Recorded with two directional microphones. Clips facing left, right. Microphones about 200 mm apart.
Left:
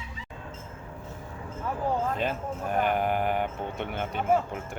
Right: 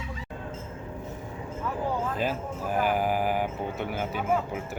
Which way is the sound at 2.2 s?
5° right (ahead or behind).